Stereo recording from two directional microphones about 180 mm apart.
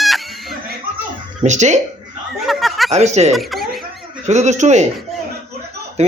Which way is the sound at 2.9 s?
40° right (ahead or behind).